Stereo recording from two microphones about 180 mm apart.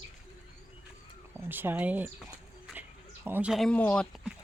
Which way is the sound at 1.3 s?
10° right (ahead or behind).